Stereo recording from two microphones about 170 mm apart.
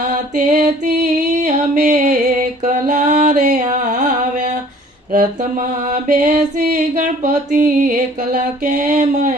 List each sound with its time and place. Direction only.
0.0 s mantra: 50° right (ahead or behind)
1.4 s music: 45° right (ahead or behind)
5.1 s mantra: 45° right (ahead or behind)